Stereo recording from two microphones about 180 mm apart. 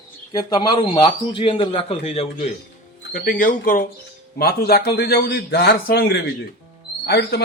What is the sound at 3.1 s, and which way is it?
A man's voice, 50° left (ahead or behind).